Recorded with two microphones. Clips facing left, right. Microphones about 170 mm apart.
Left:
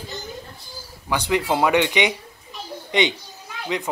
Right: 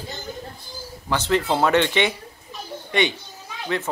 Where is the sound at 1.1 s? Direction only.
15° left (ahead or behind).